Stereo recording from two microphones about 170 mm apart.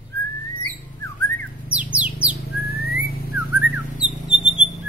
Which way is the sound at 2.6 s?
65° left (ahead or behind).